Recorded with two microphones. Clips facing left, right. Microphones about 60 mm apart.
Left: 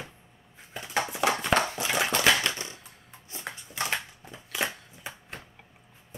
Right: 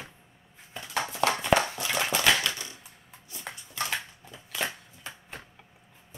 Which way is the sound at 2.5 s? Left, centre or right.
Left.